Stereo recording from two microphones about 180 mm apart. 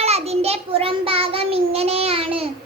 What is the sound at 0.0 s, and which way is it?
Child singing, 35° right (ahead or behind).